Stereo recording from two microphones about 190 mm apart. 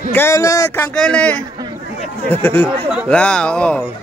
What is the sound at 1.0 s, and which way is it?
Speech, 5° left (ahead or behind).